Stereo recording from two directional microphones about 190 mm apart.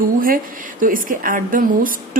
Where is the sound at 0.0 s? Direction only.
50° right (ahead or behind).